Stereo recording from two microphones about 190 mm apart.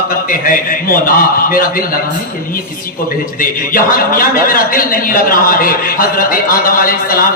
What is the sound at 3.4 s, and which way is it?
A man's voice, 45° left (ahead or behind).